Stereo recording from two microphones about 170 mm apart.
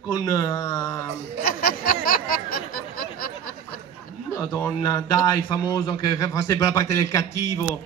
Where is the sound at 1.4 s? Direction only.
60° left (ahead or behind).